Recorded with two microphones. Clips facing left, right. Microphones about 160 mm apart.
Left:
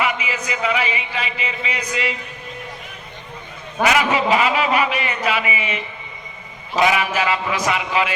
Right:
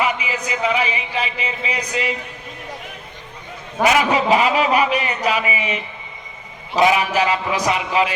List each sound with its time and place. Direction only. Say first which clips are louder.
0.0 s speech: right 1 dB; 35° right (ahead or behind)
3.8 s a man's voice: right 2 dB; 35° right (ahead or behind)